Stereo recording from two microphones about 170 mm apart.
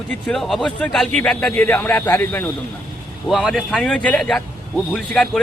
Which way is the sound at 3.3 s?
Centre (ahead or behind).